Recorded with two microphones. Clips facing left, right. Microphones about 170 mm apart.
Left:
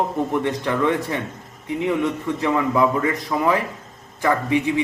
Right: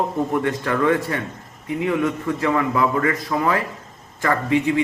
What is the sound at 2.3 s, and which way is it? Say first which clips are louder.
Speech: left 2 dB; 20° left (ahead or behind).